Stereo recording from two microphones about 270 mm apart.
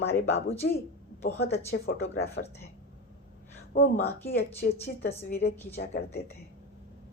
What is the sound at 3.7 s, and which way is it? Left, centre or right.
Speech, left.